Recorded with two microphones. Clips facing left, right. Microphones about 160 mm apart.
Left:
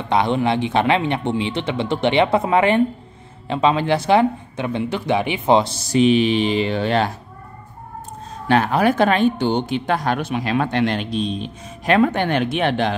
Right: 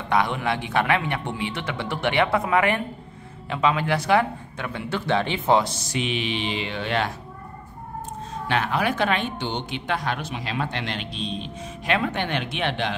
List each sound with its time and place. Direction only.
0.1 s a man's voice: 25° left (ahead or behind)
5.6 s speech: 35° left (ahead or behind)
8.5 s speech: 40° left (ahead or behind)